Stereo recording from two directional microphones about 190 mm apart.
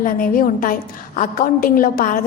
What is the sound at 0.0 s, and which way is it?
A woman's voice, 45° left (ahead or behind).